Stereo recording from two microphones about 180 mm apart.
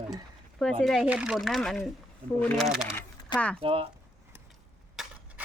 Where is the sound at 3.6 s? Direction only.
30° right (ahead or behind).